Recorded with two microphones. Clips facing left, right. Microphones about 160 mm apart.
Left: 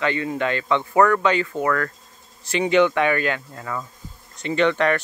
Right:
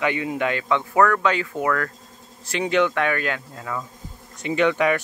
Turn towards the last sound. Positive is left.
turn(degrees=-10)  # may be behind; listen again after turning